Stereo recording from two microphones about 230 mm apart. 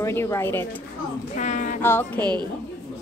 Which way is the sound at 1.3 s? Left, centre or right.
Left.